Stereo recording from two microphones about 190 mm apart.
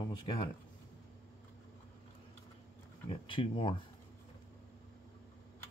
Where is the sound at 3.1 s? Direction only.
25° left (ahead or behind).